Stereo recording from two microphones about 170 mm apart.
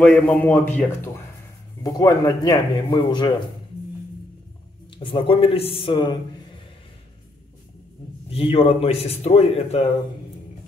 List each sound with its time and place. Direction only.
0.0 s a man's voice: 5° left (ahead or behind); by 3.3 s 25° left (ahead or behind)
4.9 s a man's voice: 30° left (ahead or behind)
8.3 s a man's voice: 35° left (ahead or behind)